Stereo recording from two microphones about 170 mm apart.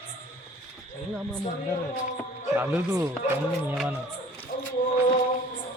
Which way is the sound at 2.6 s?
15° right (ahead or behind).